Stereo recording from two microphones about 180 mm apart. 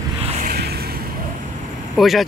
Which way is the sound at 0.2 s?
45° right (ahead or behind).